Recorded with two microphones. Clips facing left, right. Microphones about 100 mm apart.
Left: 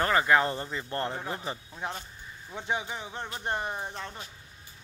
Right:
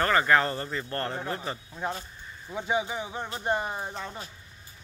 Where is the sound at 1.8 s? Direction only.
Centre (ahead or behind).